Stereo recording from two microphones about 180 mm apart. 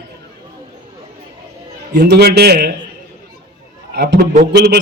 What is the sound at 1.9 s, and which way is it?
Speech, 65° right (ahead or behind).